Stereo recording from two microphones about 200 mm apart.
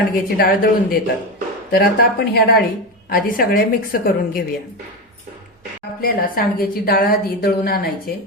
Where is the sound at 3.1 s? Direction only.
45° left (ahead or behind).